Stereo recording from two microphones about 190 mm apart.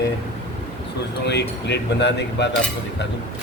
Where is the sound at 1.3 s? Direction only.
65° left (ahead or behind).